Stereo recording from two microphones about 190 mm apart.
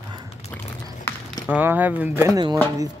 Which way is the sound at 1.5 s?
10° right (ahead or behind).